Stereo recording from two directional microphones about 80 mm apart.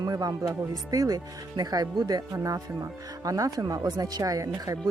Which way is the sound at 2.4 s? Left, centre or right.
Right.